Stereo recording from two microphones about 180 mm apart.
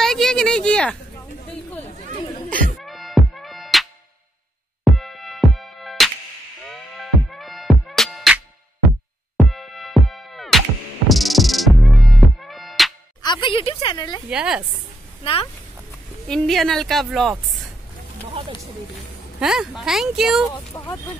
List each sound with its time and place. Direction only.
0.0 s a sound: centre (ahead or behind)
2.5 s music: 5° left (ahead or behind)
4.9 s music: centre (ahead or behind)
9.4 s music: centre (ahead or behind)
13.2 s speech: 25° left (ahead or behind)
14.3 s a woman's voice: 5° right (ahead or behind)
16.3 s a woman's voice: centre (ahead or behind)
19.4 s a woman's voice: centre (ahead or behind)
20.7 s speech: 20° left (ahead or behind)